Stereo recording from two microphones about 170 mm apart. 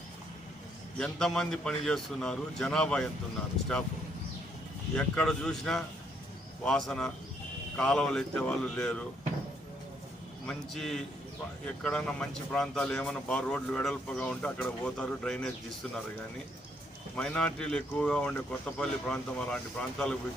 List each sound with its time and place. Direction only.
0.9 s speech: 5° left (ahead or behind)
4.9 s speech: 5° left (ahead or behind)
10.4 s speech: 5° left (ahead or behind)
17.2 s speech: 5° left (ahead or behind)